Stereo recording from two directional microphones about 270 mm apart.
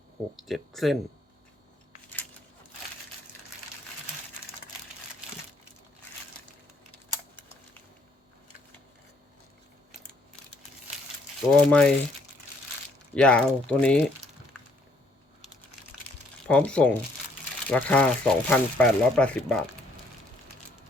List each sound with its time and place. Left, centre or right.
0.4 s speech: centre
11.7 s speech: centre
13.1 s speech: centre
16.5 s speech: centre